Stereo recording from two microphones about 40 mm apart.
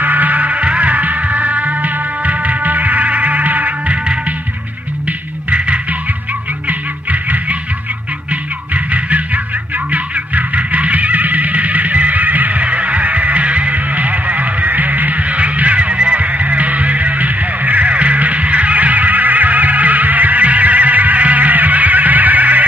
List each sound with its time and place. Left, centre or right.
0.0 s music: right
6.7 s music: right